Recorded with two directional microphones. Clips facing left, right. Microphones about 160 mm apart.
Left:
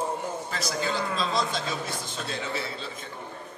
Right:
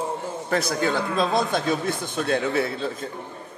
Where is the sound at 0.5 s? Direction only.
60° right (ahead or behind).